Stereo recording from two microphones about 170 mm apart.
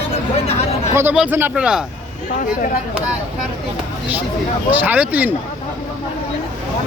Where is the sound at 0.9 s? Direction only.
10° right (ahead or behind).